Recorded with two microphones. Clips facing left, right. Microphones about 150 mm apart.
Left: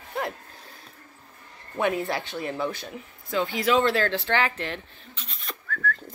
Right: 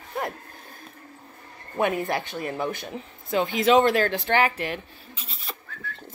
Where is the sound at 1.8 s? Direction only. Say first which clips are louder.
Right 1 dB; 50° right (ahead or behind).